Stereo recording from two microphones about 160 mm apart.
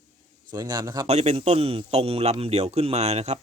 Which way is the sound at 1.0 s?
45° right (ahead or behind).